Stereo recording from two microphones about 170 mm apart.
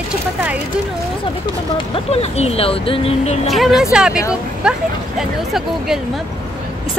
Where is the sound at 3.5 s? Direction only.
Centre (ahead or behind).